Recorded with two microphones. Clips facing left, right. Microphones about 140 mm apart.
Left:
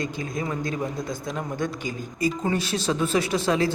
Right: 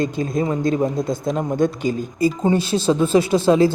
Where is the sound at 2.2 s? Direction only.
30° right (ahead or behind).